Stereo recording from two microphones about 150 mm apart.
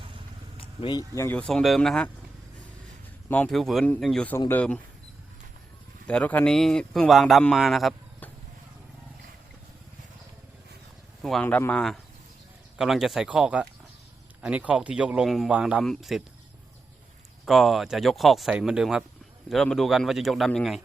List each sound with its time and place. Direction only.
0.5 s speech: 35° left (ahead or behind); by 1.4 s 20° left (ahead or behind)
1.4 s speech: 5° left (ahead or behind)
3.2 s speech: 10° left (ahead or behind)
6.1 s speech: 10° left (ahead or behind)
11.2 s speech: centre (ahead or behind)
17.4 s speech: centre (ahead or behind)